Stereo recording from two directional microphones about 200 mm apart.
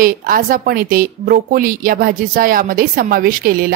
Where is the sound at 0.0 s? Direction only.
45° right (ahead or behind).